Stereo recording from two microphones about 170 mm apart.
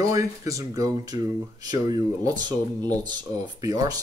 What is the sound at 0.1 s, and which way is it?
Speech, 20° right (ahead or behind).